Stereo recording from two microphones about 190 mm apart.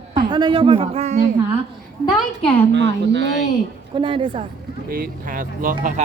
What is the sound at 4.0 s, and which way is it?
Speech, 25° right (ahead or behind).